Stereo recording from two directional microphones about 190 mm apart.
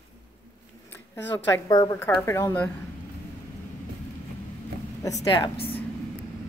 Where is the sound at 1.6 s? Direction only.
20° left (ahead or behind).